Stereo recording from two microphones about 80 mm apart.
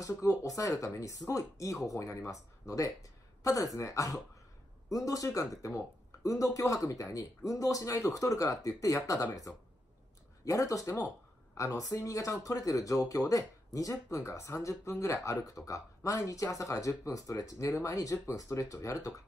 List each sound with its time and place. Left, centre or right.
0.0 s a man's voice: left